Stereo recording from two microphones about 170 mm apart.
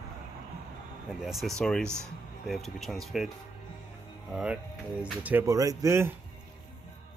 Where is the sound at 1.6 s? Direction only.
5° left (ahead or behind).